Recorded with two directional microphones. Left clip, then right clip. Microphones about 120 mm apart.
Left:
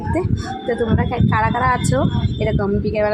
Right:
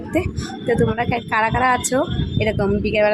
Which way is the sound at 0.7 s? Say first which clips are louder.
Right 2 dB; 35° right (ahead or behind).